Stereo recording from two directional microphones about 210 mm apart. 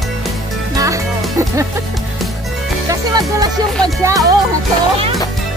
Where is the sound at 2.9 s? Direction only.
20° right (ahead or behind).